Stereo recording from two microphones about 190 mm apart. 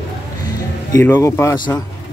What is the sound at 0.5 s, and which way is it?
Speech, 10° left (ahead or behind).